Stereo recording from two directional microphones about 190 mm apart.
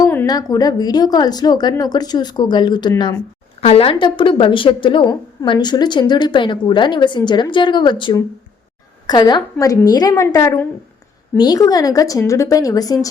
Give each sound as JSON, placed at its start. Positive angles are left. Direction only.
{"t": 0.0, "sound": "a woman's voice", "side_deg": 15}
{"t": 3.6, "sound": "a woman's voice", "side_deg": 30}